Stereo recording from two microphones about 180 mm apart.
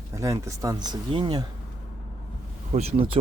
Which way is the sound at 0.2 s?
15° right (ahead or behind).